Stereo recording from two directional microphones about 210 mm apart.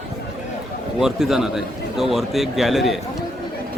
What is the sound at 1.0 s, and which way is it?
A man's voice, centre (ahead or behind).